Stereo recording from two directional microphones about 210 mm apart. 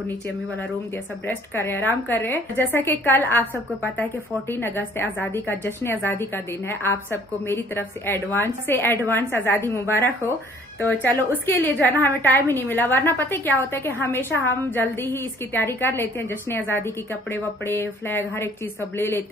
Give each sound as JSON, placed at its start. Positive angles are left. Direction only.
{"t": 1.2, "sound": "a woman's voice", "side_deg": 10}